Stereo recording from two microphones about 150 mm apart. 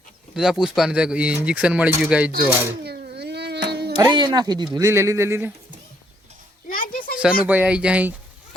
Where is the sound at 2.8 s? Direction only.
90° right.